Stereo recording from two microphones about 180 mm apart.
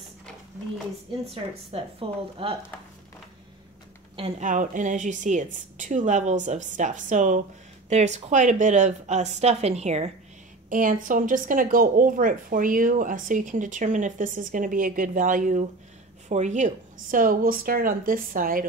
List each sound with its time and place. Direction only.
1.3 s a woman's voice: 30° right (ahead or behind)
4.4 s a woman's voice: 45° right (ahead or behind)
10.7 s speech: 50° right (ahead or behind)